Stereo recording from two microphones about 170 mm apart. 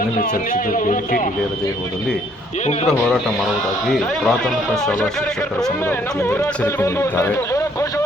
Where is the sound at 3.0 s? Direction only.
Centre (ahead or behind).